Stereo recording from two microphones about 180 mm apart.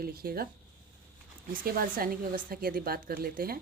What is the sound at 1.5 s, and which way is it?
A woman's voice, 50° right (ahead or behind).